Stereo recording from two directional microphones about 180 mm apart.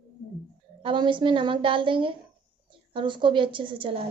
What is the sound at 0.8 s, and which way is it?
A woman's voice, 25° right (ahead or behind).